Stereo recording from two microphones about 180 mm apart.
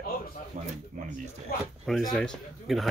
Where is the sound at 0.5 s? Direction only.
45° right (ahead or behind).